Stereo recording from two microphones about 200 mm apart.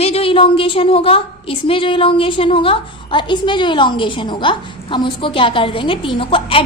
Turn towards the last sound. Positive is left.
turn(degrees=25)  # may be behind; listen again after turning